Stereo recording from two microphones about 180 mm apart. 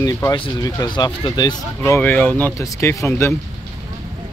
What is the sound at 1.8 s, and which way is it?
Speech, 10° left (ahead or behind).